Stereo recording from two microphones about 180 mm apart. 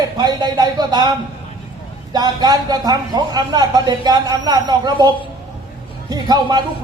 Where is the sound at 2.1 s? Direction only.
20° right (ahead or behind).